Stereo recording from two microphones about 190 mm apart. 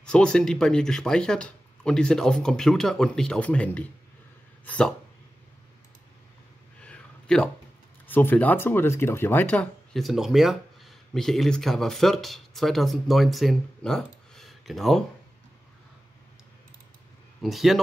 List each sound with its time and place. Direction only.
0.0 s speech: 5° left (ahead or behind)
6.8 s a sound: 5° left (ahead or behind)
8.1 s speech: 10° left (ahead or behind)
17.4 s speech: centre (ahead or behind)